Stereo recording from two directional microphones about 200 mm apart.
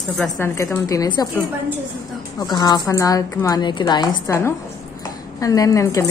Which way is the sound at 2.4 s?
20° left (ahead or behind).